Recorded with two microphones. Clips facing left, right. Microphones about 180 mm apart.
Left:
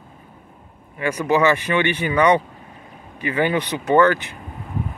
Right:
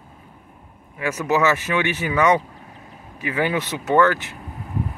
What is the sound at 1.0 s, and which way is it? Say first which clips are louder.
Speech: left 2 dB; 5° right (ahead or behind).